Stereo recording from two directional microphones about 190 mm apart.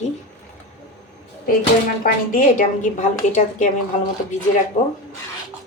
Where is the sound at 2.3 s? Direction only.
45° left (ahead or behind).